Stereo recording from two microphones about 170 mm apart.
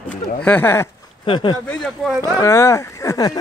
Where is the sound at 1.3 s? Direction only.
30° left (ahead or behind).